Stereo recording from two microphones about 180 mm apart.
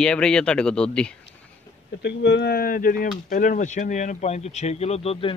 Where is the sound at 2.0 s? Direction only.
70° left (ahead or behind).